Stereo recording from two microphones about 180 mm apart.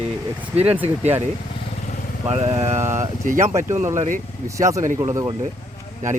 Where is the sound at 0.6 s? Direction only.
10° right (ahead or behind).